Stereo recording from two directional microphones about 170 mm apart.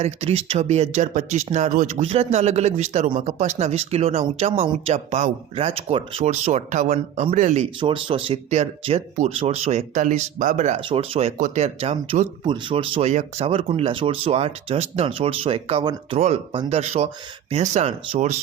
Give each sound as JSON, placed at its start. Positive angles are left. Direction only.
{"t": 0.0, "sound": "speech", "side_deg": -40}
{"t": 7.8, "sound": "speech", "side_deg": -30}
{"t": 10.8, "sound": "speech", "side_deg": -30}